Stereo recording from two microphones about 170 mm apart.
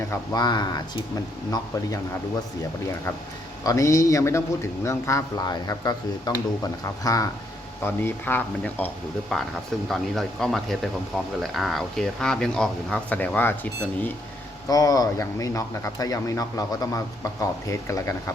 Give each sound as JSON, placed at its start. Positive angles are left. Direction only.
{"t": 0.1, "sound": "a man's voice", "side_deg": 25}
{"t": 3.6, "sound": "a man's voice", "side_deg": 20}
{"t": 14.7, "sound": "a man's voice", "side_deg": 20}